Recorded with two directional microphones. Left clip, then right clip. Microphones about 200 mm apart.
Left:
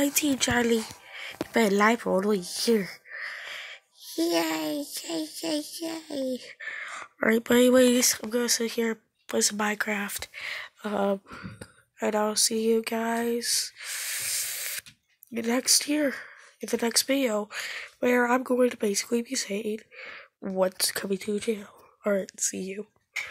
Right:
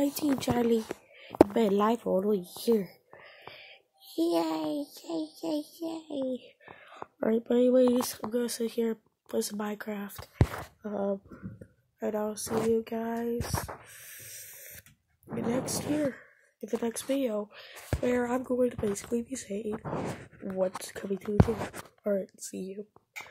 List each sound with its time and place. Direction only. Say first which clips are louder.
0.0 s speech: left 4 dB; centre (ahead or behind)
2.1 s a sound: left 3 dB; 5° left (ahead or behind)
4.1 s a child's voice: left 2 dB; centre (ahead or behind); by 13.4 s 15° left (ahead or behind)
13.8 s spray: left 16 dB; 10° left (ahead or behind)
15.3 s speech: left 7 dB; 10° left (ahead or behind)